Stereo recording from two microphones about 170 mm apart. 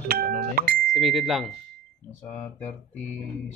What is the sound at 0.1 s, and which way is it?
Beep, 60° right (ahead or behind).